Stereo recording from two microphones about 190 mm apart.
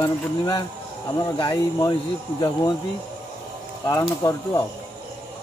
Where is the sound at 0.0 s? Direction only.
25° left (ahead or behind).